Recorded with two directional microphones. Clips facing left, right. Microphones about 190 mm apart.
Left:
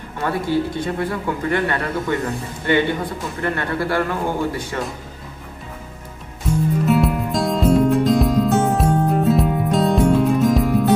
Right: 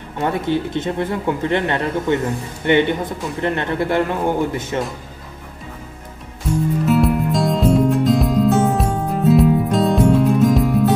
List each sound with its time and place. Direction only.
0.2 s speech: 20° right (ahead or behind)
6.9 s music: centre (ahead or behind)